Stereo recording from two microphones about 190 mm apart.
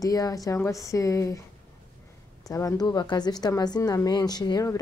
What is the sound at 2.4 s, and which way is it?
A woman's voice, 20° left (ahead or behind).